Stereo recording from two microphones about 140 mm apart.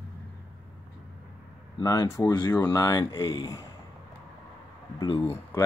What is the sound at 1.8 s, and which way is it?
Speech, 25° left (ahead or behind).